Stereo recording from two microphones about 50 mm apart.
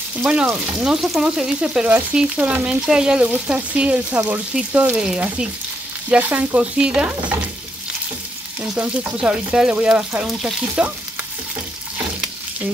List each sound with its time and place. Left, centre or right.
0.2 s speech: centre
0.7 s frying: centre
1.2 s frying: centre
1.9 s frying: right
2.2 s speech: right
2.8 s frying: centre
3.2 s speech: right
4.9 s frying: centre
6.0 s frying: right
6.6 s speech: right
8.7 s speech: right
9.1 s speech: centre